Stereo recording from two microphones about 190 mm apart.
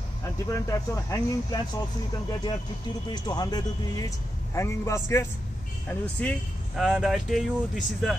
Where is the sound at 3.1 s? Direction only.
20° left (ahead or behind).